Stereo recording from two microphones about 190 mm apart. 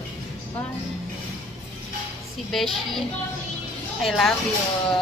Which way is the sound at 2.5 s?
Centre (ahead or behind).